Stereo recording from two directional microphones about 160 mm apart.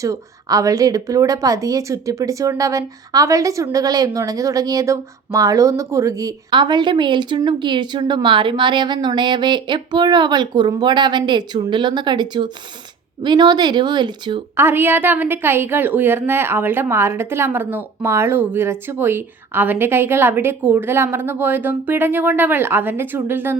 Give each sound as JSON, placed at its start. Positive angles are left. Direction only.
{"t": 0.0, "sound": "a woman's voice", "side_deg": -20}
{"t": 14.5, "sound": "a woman's voice", "side_deg": -15}